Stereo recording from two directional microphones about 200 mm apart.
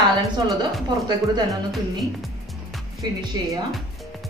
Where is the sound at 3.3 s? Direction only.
20° right (ahead or behind).